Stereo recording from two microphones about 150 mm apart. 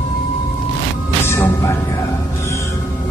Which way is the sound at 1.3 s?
15° left (ahead or behind).